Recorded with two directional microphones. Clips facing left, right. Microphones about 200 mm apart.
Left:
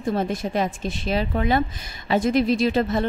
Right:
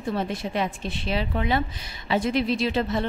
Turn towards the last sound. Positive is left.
turn(degrees=45)  # may be behind; listen again after turning